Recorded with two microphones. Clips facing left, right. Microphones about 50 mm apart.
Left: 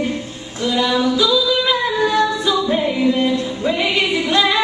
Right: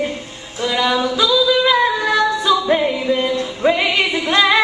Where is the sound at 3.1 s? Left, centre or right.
Right.